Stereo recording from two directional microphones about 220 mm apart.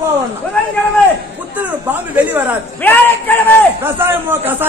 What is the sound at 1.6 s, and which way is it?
Speech, 5° right (ahead or behind).